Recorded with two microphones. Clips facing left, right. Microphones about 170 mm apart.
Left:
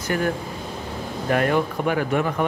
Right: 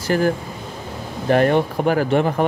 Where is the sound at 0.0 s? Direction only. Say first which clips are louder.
Right 5 dB; 35° right (ahead or behind).